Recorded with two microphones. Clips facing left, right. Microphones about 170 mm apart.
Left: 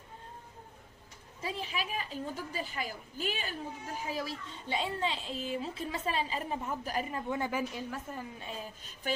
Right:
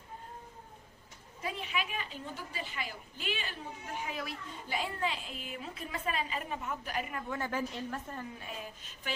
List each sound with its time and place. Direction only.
1.4 s a child's voice: 30° left (ahead or behind)
7.3 s a woman's voice: 15° left (ahead or behind)